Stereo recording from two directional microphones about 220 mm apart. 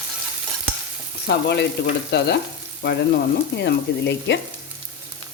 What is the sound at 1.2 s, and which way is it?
Speech, 50° left (ahead or behind).